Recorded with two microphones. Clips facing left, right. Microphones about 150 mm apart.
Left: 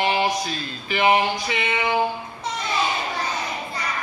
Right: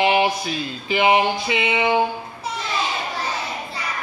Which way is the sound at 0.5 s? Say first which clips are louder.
Right 4 dB; 20° right (ahead or behind).